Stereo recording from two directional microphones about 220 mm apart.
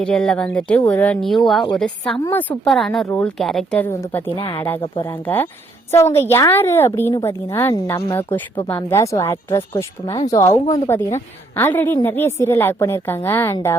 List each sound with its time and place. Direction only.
0.0 s a woman's voice: 5° left (ahead or behind)